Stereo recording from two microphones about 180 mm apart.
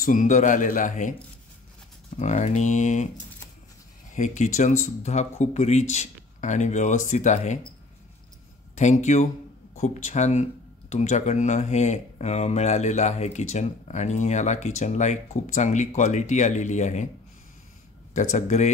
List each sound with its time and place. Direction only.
0.0 s speech: 45° left (ahead or behind)
2.1 s speech: 40° left (ahead or behind)
4.1 s speech: 45° left (ahead or behind)
8.7 s speech: 40° left (ahead or behind)
18.1 s speech: 40° left (ahead or behind)